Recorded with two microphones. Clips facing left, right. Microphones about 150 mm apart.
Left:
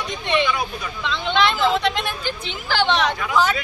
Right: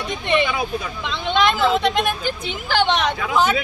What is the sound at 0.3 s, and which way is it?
Speech, 50° right (ahead or behind).